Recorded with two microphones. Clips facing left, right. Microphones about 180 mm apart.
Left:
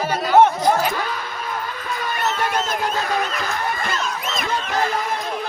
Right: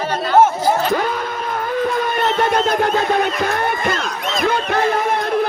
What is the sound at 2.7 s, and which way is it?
A man's voice, 60° right (ahead or behind).